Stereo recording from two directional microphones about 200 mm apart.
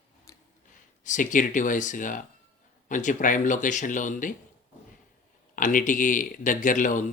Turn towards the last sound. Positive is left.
turn(degrees=40)  # may be behind; listen again after turning